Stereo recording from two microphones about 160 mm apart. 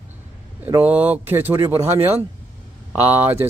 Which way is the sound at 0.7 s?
15° right (ahead or behind).